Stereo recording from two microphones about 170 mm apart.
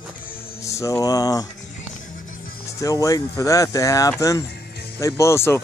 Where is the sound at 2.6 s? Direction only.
20° left (ahead or behind).